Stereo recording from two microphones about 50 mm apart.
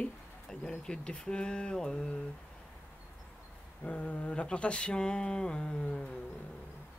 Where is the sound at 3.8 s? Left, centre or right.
Left.